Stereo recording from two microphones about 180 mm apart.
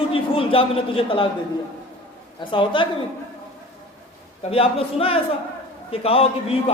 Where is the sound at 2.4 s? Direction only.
25° left (ahead or behind).